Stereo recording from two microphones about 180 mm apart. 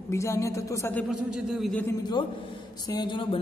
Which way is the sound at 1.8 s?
25° left (ahead or behind).